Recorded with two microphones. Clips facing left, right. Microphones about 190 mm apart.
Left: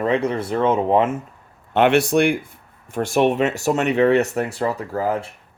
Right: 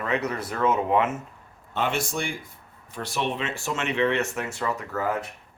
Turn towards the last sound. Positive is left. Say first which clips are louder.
# left 5 dB
turn(degrees=30)  # may be behind; listen again after turning